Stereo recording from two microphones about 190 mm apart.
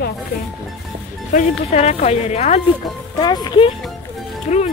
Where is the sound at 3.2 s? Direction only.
20° left (ahead or behind).